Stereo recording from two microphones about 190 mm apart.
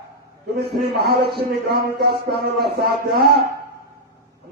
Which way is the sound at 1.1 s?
55° right (ahead or behind).